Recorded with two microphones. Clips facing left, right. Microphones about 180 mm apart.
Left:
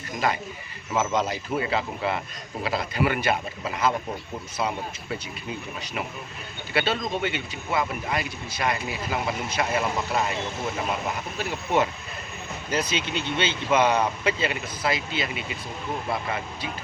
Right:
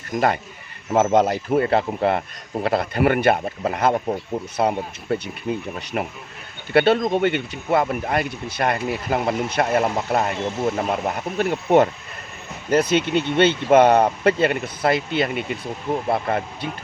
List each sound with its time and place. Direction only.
0.1 s speech: 45° right (ahead or behind)
0.9 s speech: 60° right (ahead or behind)